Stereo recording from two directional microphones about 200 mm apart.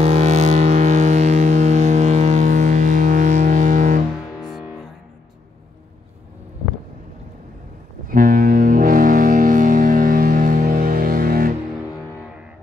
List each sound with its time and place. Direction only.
0.0 s vehicle: 35° right (ahead or behind)
4.4 s music: centre (ahead or behind)
8.1 s music: 45° right (ahead or behind)